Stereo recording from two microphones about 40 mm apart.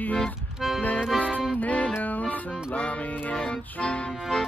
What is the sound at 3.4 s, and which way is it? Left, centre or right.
Music, left.